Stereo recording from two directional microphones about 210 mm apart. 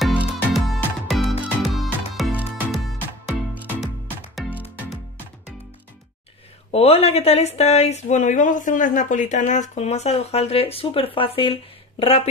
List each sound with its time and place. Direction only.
0.0 s music: 5° left (ahead or behind)
6.7 s speech: 30° left (ahead or behind)